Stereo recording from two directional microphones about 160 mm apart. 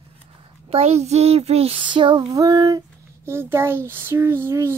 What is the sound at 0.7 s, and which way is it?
Child singing, 40° right (ahead or behind).